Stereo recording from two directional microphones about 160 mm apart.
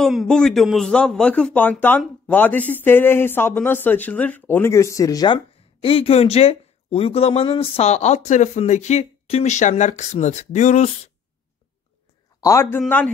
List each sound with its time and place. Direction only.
0.0 s a man's voice: centre (ahead or behind); by 10.9 s 45° left (ahead or behind)
12.4 s a man's voice: 20° left (ahead or behind)